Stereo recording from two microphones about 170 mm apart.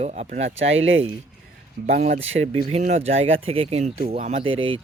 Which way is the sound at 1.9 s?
50° right (ahead or behind).